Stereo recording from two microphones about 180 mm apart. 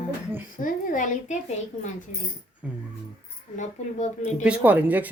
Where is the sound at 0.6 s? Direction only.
45° left (ahead or behind).